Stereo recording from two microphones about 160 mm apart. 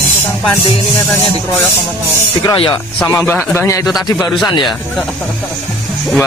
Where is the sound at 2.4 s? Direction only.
25° left (ahead or behind).